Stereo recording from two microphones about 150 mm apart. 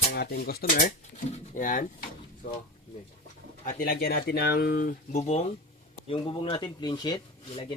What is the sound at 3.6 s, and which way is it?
Speech, 70° left (ahead or behind).